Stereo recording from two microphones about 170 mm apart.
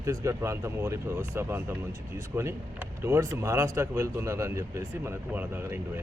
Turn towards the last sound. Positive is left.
turn(degrees=-15)  # may be behind; listen again after turning